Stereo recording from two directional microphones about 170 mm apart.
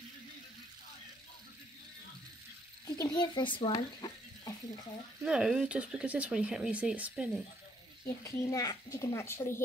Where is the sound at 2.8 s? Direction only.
25° left (ahead or behind).